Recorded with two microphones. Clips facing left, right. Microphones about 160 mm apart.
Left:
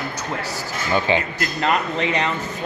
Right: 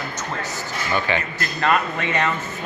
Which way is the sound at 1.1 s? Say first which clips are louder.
Left 3 dB; 20° left (ahead or behind).